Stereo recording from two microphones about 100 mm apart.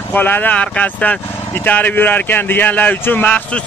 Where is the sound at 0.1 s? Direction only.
15° left (ahead or behind).